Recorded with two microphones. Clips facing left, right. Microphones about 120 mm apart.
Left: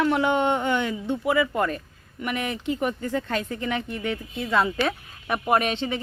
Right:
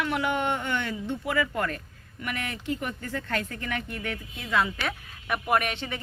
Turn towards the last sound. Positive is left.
turn(degrees=25)  # may be behind; listen again after turning